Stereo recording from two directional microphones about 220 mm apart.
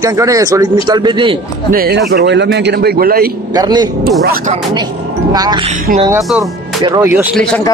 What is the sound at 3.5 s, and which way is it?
Speech, 20° right (ahead or behind).